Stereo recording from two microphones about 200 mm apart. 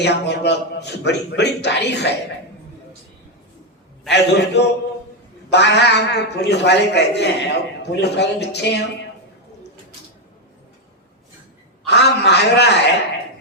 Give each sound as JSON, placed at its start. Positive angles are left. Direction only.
{"t": 0.0, "sound": "a man's voice", "side_deg": 60}
{"t": 4.1, "sound": "a man's voice", "side_deg": 60}
{"t": 11.9, "sound": "a man's voice", "side_deg": 60}